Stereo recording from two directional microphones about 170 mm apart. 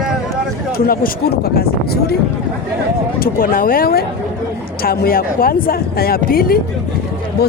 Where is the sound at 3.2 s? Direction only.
60° left (ahead or behind).